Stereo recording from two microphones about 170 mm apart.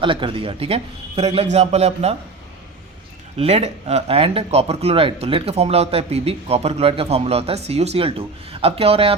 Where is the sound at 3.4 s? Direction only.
35° right (ahead or behind).